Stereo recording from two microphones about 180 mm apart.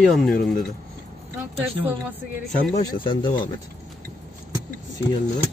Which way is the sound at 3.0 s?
25° left (ahead or behind).